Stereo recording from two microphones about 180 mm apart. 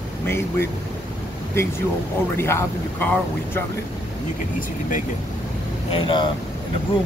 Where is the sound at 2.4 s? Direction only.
15° left (ahead or behind).